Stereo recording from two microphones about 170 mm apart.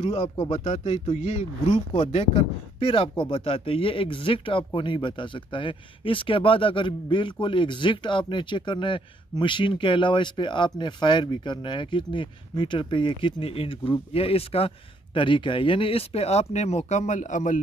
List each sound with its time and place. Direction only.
0.0 s speech: 35° left (ahead or behind)